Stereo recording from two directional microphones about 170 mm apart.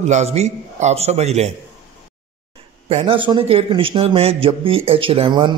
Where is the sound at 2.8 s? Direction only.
35° right (ahead or behind).